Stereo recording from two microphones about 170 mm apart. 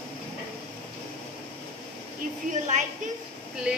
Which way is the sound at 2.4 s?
45° right (ahead or behind).